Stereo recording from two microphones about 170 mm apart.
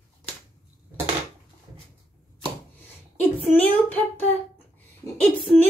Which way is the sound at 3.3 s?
10° left (ahead or behind).